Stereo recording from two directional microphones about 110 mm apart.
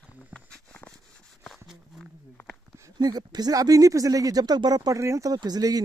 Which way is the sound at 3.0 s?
40° right (ahead or behind).